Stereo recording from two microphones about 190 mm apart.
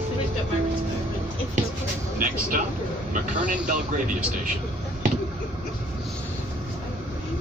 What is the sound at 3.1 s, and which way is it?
Speech, 45° right (ahead or behind).